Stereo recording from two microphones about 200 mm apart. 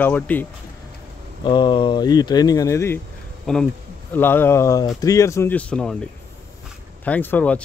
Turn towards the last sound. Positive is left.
turn(degrees=5)  # may be behind; listen again after turning